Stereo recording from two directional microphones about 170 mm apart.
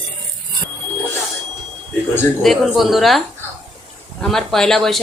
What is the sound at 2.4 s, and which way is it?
Speech, centre (ahead or behind).